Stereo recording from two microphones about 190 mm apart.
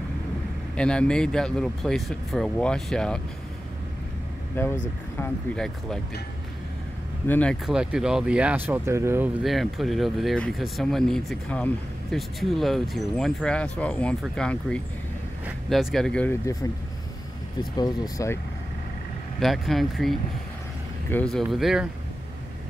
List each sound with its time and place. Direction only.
0.7 s speech: 5° left (ahead or behind)
4.6 s speech: 10° left (ahead or behind)
7.2 s speech: 10° left (ahead or behind)
7.6 s speech: 5° right (ahead or behind)
9.4 s speech: centre (ahead or behind)
17.7 s speech: 20° left (ahead or behind)
19.4 s speech: centre (ahead or behind)